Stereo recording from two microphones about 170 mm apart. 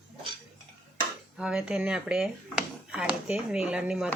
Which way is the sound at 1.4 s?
5° right (ahead or behind).